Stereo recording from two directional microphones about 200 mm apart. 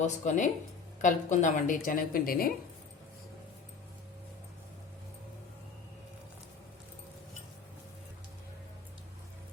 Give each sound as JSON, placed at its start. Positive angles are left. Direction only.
{"t": 0.0, "sound": "a woman's voice", "side_deg": 35}